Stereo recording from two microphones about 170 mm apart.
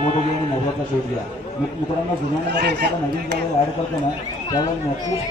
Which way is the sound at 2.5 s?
75° right (ahead or behind).